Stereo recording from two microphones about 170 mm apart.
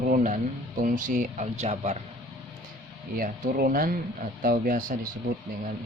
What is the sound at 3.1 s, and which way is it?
Speech, 55° right (ahead or behind).